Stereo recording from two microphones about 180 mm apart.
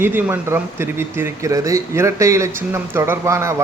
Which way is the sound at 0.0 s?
10° right (ahead or behind).